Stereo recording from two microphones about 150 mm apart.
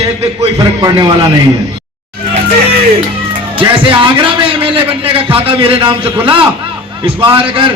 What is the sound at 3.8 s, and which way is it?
A man's voice, 35° right (ahead or behind).